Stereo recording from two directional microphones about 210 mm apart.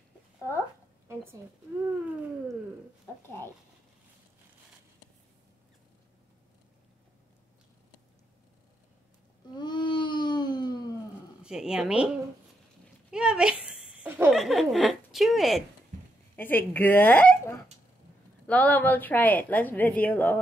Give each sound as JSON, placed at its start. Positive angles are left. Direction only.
{"t": 9.5, "sound": "baby cry", "side_deg": 20}
{"t": 11.4, "sound": "speech", "side_deg": -5}
{"t": 13.1, "sound": "a woman's voice", "side_deg": -5}